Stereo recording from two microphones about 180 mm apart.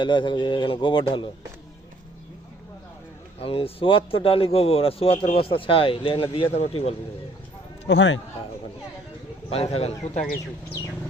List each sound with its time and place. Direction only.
0.0 s a man's voice: 25° left (ahead or behind)
3.4 s a man's voice: 30° left (ahead or behind)
7.9 s a man's voice: 85° left
9.5 s a man's voice: 35° left (ahead or behind)